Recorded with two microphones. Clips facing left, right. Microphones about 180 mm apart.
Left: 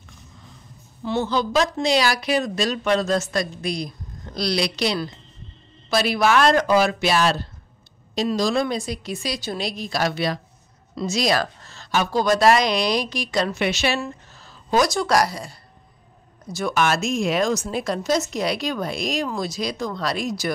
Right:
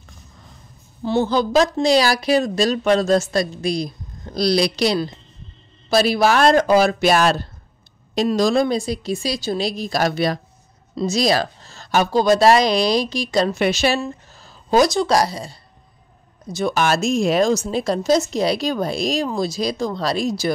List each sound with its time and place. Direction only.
1.0 s a woman's voice: 35° right (ahead or behind)
12.1 s speech: 30° right (ahead or behind)
14.4 s a sound: 35° right (ahead or behind)
14.9 s speech: 25° right (ahead or behind)
16.7 s speech: 35° right (ahead or behind)